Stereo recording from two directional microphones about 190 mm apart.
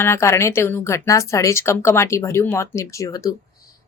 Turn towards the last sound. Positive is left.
turn(degrees=20)  # may be behind; listen again after turning